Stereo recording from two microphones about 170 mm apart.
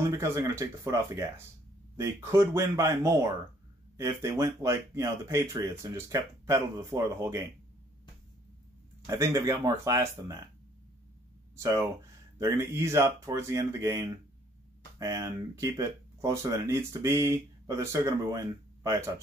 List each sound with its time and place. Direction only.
0.0 s speech: 15° right (ahead or behind)
9.0 s speech: 15° right (ahead or behind)
11.5 s speech: 20° right (ahead or behind)